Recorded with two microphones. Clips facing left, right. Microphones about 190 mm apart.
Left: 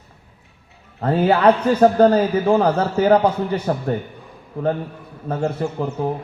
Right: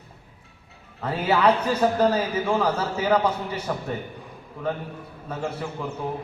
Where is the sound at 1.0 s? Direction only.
55° left (ahead or behind).